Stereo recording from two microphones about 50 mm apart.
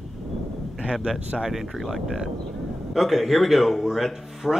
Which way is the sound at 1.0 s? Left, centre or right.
Centre.